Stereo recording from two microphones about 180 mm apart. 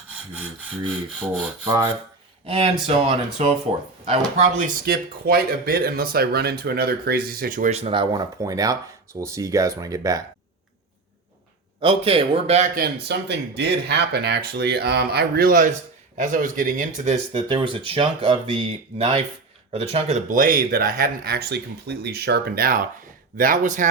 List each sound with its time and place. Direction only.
1.6 s speech: 25° right (ahead or behind)
2.5 s speech: 35° right (ahead or behind)
4.9 s speech: 55° right (ahead or behind)
7.7 s speech: 35° right (ahead or behind)
8.1 s speech: 20° right (ahead or behind)
11.8 s speech: 30° right (ahead or behind)
12.7 s speech: 60° right (ahead or behind)
17.3 s speech: 25° right (ahead or behind); by 23.9 s 45° right (ahead or behind)